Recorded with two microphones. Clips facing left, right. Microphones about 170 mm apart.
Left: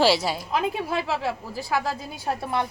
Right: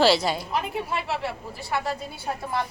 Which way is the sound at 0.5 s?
90° left.